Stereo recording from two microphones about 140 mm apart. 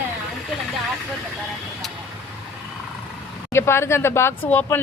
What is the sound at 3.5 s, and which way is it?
Speech, 20° left (ahead or behind).